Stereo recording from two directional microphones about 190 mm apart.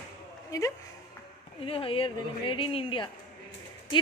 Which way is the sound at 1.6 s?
30° left (ahead or behind).